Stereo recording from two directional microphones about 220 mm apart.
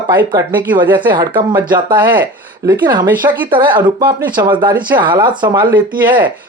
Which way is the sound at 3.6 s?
20° right (ahead or behind).